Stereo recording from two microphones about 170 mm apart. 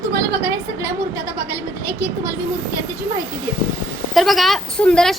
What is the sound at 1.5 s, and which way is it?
Speech, 15° right (ahead or behind).